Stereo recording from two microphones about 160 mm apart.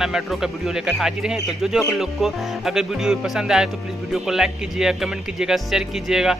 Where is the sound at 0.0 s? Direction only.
5° right (ahead or behind).